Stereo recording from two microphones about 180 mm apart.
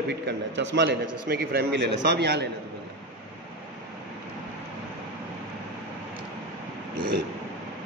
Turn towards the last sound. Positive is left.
turn(degrees=-50)  # may be behind; listen again after turning